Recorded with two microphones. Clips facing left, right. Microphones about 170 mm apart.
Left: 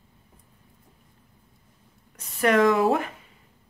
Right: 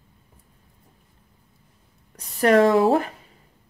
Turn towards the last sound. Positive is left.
turn(degrees=-30)  # may be behind; listen again after turning